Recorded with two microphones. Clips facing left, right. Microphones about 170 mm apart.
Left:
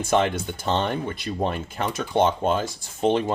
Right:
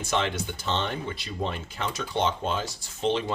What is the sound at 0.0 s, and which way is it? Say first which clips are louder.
Speech: left 6 dB; 50° left (ahead or behind).